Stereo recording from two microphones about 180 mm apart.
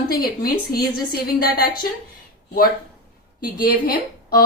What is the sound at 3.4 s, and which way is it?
A woman's voice, 55° left (ahead or behind).